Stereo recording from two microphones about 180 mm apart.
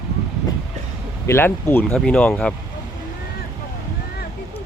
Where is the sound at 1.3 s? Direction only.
10° left (ahead or behind).